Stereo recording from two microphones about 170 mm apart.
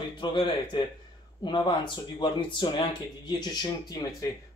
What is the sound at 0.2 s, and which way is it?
Speech, 25° left (ahead or behind).